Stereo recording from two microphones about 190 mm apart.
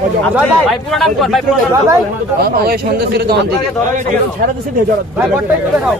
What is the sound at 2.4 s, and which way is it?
Speech, 55° right (ahead or behind).